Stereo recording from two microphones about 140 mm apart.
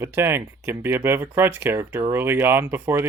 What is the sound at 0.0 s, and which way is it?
Speech, 15° right (ahead or behind).